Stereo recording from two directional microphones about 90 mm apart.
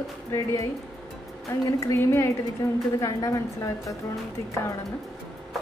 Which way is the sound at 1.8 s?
30° left (ahead or behind).